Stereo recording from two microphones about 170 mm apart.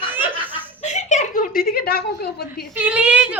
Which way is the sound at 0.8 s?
45° left (ahead or behind).